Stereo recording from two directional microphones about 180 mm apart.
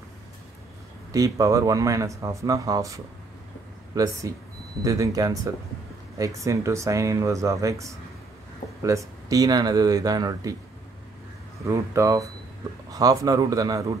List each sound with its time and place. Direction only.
1.1 s speech: 20° right (ahead or behind)
11.6 s speech: 15° right (ahead or behind)